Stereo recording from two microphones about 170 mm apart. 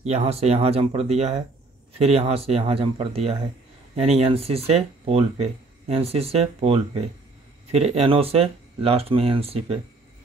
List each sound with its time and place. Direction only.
0.0 s speech: 35° right (ahead or behind)